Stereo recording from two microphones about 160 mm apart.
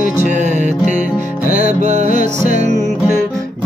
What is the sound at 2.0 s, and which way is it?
Music, 60° left (ahead or behind).